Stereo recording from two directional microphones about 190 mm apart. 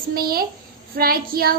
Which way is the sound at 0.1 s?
50° right (ahead or behind).